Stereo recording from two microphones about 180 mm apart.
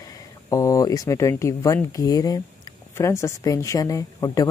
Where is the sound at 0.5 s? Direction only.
20° left (ahead or behind).